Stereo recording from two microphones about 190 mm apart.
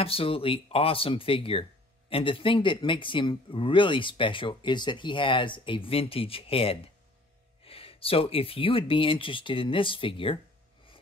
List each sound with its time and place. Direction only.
0.0 s speech: 30° left (ahead or behind)